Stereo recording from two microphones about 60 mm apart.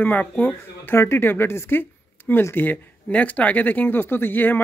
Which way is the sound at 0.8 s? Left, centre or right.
Left.